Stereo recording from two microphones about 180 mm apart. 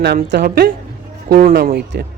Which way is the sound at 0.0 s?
70° right (ahead or behind).